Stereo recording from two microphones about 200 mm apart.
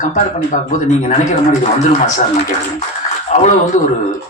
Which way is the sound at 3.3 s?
35° left (ahead or behind).